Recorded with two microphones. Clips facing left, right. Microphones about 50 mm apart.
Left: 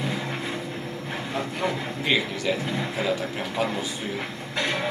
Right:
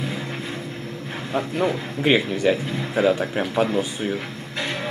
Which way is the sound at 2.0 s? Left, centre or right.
Right.